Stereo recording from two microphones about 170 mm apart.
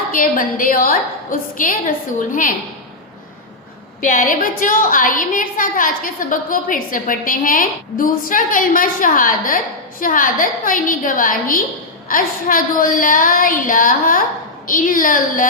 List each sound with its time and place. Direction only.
0.1 s a woman's voice: 55° left (ahead or behind)
4.1 s a woman's voice: 50° left (ahead or behind)